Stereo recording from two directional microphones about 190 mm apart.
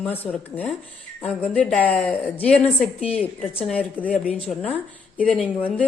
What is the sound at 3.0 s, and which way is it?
Speech, 30° left (ahead or behind).